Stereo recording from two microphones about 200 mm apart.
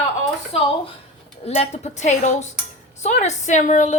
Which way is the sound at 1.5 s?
35° left (ahead or behind).